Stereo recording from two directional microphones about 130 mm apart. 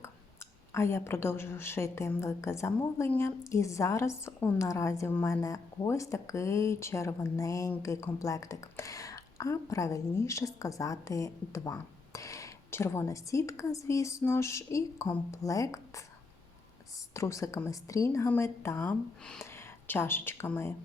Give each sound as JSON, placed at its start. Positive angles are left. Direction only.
{"t": 0.0, "sound": "speech", "side_deg": 20}
{"t": 17.2, "sound": "speech", "side_deg": 25}